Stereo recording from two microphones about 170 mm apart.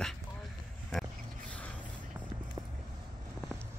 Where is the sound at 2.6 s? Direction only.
20° right (ahead or behind).